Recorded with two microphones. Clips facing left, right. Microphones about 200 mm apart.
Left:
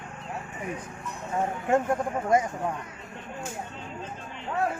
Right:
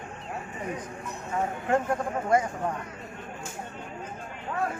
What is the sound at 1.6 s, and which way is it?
Speech, 25° left (ahead or behind).